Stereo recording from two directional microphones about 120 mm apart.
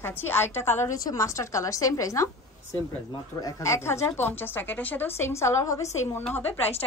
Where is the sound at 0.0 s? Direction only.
20° left (ahead or behind).